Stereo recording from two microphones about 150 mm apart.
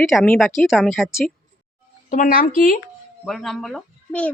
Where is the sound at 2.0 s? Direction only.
60° left (ahead or behind).